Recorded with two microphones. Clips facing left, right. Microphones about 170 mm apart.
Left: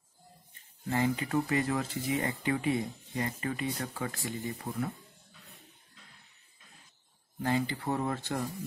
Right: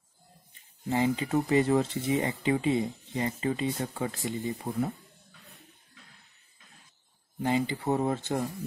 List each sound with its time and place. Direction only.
0.8 s speech: 20° right (ahead or behind)
7.4 s speech: 20° right (ahead or behind)